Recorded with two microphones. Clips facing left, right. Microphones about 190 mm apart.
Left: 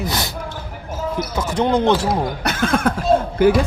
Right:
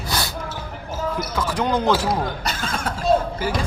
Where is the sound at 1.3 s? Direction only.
25° left (ahead or behind).